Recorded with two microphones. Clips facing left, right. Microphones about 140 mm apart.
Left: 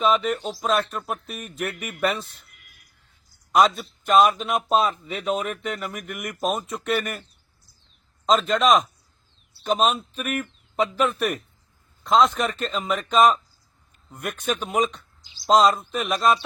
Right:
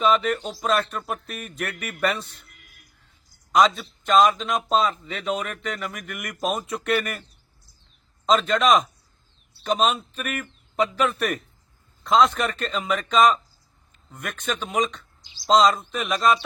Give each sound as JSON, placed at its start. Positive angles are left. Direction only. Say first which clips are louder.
{"t": 0.0, "sound": "a man's voice", "louder": "even", "side_deg": 0}
{"t": 3.5, "sound": "a man's voice", "louder": "even", "side_deg": 5}
{"t": 8.3, "sound": "a man's voice", "louder": "even", "side_deg": 0}